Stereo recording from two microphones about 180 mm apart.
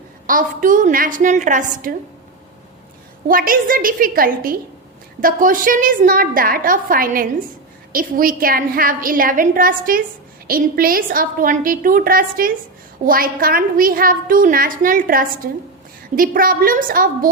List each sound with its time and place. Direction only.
0.3 s a woman's voice: 50° right (ahead or behind)
3.2 s a woman's voice: 50° right (ahead or behind)